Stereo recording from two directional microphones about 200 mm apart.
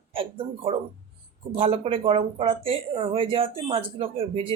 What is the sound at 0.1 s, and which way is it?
Speech, 30° right (ahead or behind).